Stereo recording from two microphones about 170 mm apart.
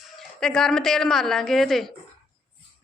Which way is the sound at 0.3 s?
5° left (ahead or behind).